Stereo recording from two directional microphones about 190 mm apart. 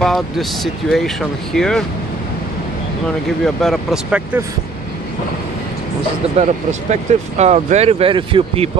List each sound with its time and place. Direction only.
0.0 s speech: centre (ahead or behind)
3.4 s speech: centre (ahead or behind)
6.3 s speech: 35° right (ahead or behind)